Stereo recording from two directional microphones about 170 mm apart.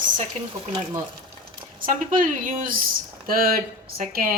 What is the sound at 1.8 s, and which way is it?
A woman's voice, 50° right (ahead or behind).